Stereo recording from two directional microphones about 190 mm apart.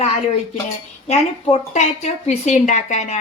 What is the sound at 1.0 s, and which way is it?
A woman's voice, 35° left (ahead or behind).